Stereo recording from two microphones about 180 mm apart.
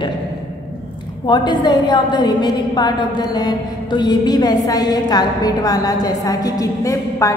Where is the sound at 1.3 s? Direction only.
25° left (ahead or behind).